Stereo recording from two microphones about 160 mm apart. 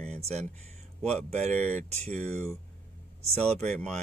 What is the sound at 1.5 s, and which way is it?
Speech, 45° right (ahead or behind).